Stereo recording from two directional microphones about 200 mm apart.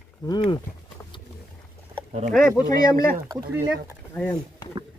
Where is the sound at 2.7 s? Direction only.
45° right (ahead or behind).